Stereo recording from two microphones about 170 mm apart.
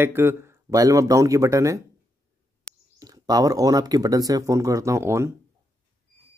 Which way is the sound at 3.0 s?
20° right (ahead or behind).